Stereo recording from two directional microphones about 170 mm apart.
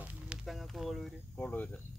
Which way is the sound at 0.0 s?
5° right (ahead or behind).